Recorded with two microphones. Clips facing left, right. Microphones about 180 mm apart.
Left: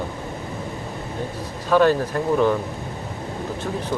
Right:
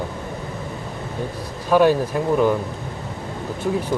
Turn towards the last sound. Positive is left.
turn(degrees=-10)  # may be behind; listen again after turning